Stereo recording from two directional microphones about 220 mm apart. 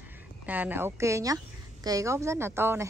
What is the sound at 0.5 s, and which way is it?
A woman's voice, 10° right (ahead or behind).